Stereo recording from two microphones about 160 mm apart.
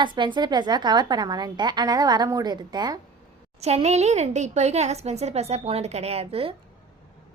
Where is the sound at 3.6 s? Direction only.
45° right (ahead or behind).